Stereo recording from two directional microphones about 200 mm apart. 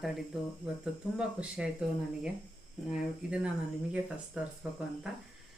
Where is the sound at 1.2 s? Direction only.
5° right (ahead or behind).